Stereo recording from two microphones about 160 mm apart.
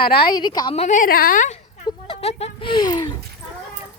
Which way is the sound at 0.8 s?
50° left (ahead or behind).